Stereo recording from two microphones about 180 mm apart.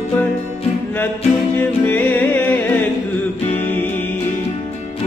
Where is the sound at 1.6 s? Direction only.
10° left (ahead or behind).